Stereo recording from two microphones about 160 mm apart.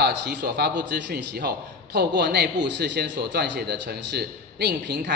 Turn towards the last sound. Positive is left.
turn(degrees=-90)